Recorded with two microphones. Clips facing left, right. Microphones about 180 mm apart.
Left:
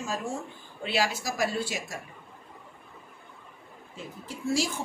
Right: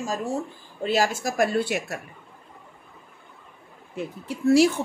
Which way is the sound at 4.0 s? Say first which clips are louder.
Right 9 dB; 65° right (ahead or behind).